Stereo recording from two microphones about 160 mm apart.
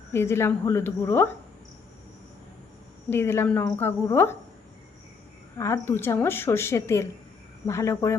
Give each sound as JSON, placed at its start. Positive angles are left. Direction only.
{"t": 0.1, "sound": "a woman's voice", "side_deg": 15}
{"t": 3.1, "sound": "a woman's voice", "side_deg": 15}
{"t": 5.5, "sound": "a woman's voice", "side_deg": 20}